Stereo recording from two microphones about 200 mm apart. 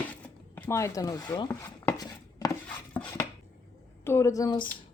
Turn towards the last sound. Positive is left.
turn(degrees=20)  # may be behind; listen again after turning